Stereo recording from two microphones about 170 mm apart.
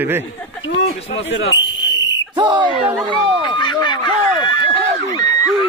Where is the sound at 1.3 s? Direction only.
90° left.